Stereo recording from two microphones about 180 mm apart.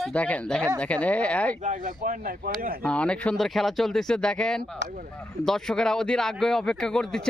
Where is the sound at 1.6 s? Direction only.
45° right (ahead or behind).